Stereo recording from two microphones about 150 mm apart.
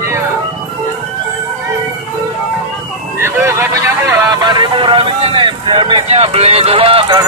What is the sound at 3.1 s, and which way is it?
Vehicle, 20° right (ahead or behind).